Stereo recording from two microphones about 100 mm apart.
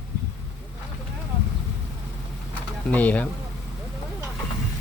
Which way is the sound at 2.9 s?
15° left (ahead or behind).